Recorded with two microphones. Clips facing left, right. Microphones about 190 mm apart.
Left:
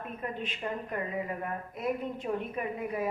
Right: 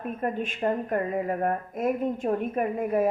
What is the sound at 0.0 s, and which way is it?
A woman's voice, 50° right (ahead or behind).